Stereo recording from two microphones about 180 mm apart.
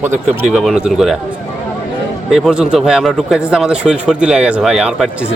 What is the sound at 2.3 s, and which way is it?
A man's voice, 5° right (ahead or behind).